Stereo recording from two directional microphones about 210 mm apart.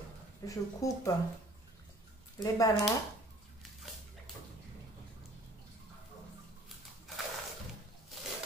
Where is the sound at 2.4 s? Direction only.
15° left (ahead or behind).